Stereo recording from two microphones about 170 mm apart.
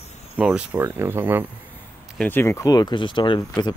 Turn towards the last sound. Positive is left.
turn(degrees=25)  # may be behind; listen again after turning